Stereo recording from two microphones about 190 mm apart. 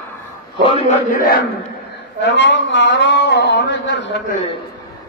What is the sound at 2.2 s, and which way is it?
A man's voice, 70° left (ahead or behind).